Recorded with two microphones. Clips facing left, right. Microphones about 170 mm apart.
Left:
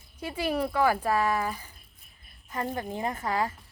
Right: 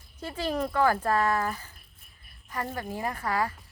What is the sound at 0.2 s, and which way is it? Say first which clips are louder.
A woman's voice: left 1 dB; 10° left (ahead or behind).